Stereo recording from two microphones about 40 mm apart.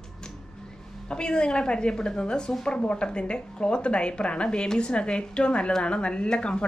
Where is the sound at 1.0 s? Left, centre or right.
Left.